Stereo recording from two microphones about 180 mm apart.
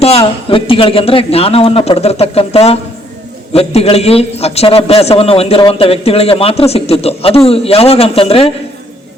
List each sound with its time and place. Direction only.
0.0 s a man's voice: 35° left (ahead or behind)